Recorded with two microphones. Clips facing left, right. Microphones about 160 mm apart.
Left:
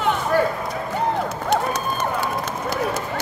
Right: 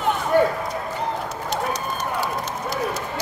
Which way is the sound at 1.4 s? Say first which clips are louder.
Left 4 dB; 55° left (ahead or behind).